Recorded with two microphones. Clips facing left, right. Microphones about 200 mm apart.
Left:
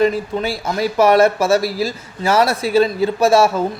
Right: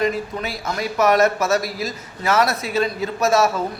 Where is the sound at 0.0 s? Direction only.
30° left (ahead or behind).